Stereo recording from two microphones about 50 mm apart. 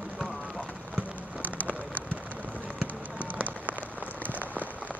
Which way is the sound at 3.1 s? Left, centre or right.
Right.